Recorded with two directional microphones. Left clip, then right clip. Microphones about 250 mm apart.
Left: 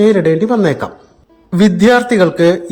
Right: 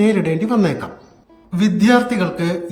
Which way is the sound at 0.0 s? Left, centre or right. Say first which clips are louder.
Left 7 dB; centre.